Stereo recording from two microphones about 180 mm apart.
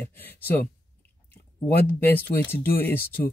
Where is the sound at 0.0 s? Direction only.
10° left (ahead or behind).